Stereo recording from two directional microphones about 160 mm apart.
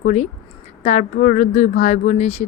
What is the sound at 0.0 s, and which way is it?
A woman's voice, 45° left (ahead or behind).